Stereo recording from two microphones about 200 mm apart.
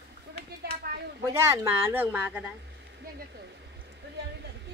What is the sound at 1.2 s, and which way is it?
Speech, 15° right (ahead or behind).